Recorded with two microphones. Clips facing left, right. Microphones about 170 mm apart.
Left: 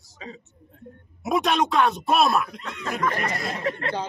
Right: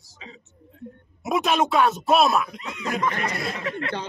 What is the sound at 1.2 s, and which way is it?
A man's voice, centre (ahead or behind).